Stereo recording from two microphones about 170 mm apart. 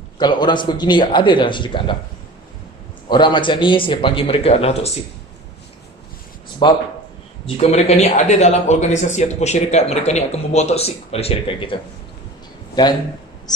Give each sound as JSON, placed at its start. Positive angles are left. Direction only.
{"t": 0.2, "sound": "a man's voice", "side_deg": 25}
{"t": 3.1, "sound": "a man's voice", "side_deg": 25}
{"t": 6.6, "sound": "a man's voice", "side_deg": 25}